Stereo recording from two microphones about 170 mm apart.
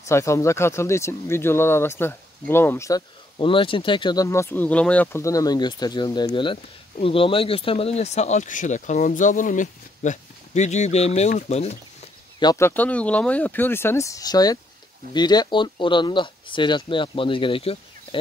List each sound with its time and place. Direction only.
0.0 s speech: 15° left (ahead or behind)
3.3 s speech: 30° left (ahead or behind)
12.4 s speech: 20° left (ahead or behind)